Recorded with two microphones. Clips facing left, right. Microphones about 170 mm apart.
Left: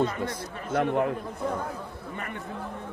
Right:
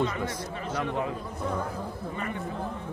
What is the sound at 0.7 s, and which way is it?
Speech, 55° left (ahead or behind).